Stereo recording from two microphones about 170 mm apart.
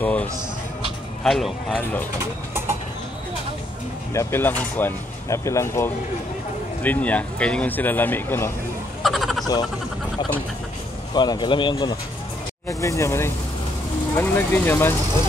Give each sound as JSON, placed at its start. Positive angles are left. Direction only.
{"t": 0.0, "sound": "speech", "side_deg": 10}
{"t": 2.5, "sound": "bird", "side_deg": -15}
{"t": 4.1, "sound": "speech", "side_deg": 15}
{"t": 9.0, "sound": "frog", "side_deg": 0}
{"t": 11.1, "sound": "speech", "side_deg": 25}
{"t": 12.6, "sound": "speech", "side_deg": 15}